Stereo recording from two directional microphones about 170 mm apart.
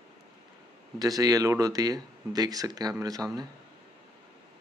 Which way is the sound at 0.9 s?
20° right (ahead or behind).